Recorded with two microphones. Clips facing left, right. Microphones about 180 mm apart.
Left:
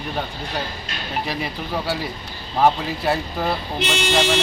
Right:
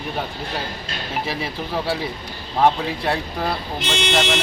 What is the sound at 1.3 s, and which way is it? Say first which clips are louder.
Speech: even; centre (ahead or behind).